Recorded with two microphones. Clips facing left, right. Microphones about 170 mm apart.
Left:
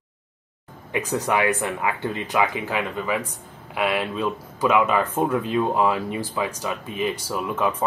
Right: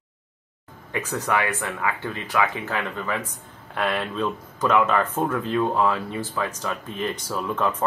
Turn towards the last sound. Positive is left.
turn(degrees=10)  # may be behind; listen again after turning